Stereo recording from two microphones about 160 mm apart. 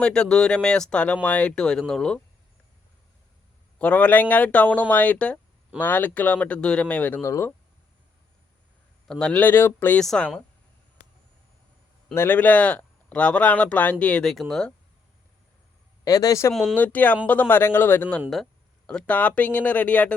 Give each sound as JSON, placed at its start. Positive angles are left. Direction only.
{"t": 0.0, "sound": "speech", "side_deg": 5}
{"t": 3.8, "sound": "speech", "side_deg": 10}
{"t": 9.0, "sound": "speech", "side_deg": 5}
{"t": 12.1, "sound": "speech", "side_deg": 15}
{"t": 16.0, "sound": "a man's voice", "side_deg": 25}